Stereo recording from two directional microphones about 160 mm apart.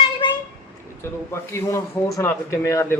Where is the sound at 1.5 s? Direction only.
20° left (ahead or behind).